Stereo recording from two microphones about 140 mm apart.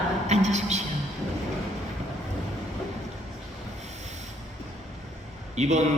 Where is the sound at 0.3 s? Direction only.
50° right (ahead or behind).